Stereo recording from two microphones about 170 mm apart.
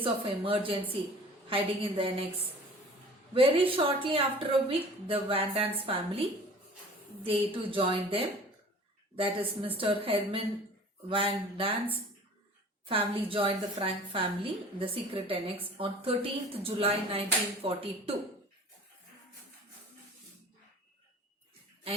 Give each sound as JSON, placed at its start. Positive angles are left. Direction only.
{"t": 0.0, "sound": "a woman's voice", "side_deg": -30}
{"t": 3.3, "sound": "a woman's voice", "side_deg": -35}
{"t": 7.3, "sound": "a woman's voice", "side_deg": -30}